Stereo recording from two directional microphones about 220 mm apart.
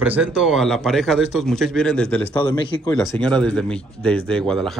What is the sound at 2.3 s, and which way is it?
Speech, 20° left (ahead or behind).